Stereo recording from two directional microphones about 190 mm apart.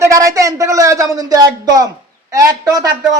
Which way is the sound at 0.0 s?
15° right (ahead or behind).